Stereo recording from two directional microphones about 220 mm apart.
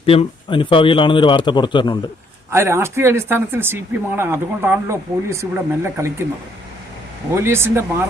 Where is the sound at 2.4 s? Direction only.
10° right (ahead or behind).